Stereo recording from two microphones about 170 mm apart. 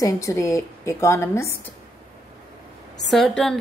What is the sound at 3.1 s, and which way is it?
Speech, centre (ahead or behind).